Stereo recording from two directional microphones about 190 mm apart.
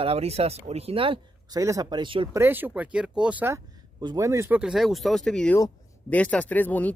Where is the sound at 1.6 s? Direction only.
15° right (ahead or behind).